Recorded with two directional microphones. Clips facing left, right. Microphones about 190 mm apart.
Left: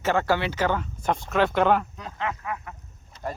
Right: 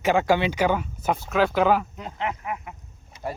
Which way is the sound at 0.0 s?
15° right (ahead or behind).